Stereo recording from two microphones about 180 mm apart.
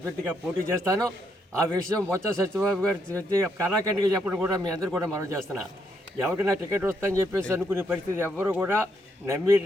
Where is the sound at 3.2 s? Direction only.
15° right (ahead or behind).